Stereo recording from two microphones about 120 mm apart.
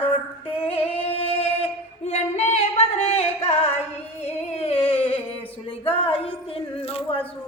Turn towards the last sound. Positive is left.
turn(degrees=55)  # may be behind; listen again after turning